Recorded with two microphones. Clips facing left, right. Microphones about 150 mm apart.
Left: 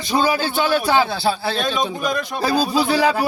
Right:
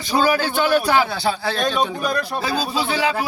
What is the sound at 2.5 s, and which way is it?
Speech, 10° left (ahead or behind).